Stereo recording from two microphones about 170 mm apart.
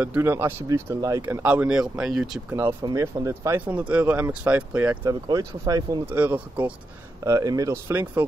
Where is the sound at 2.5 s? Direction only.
15° right (ahead or behind).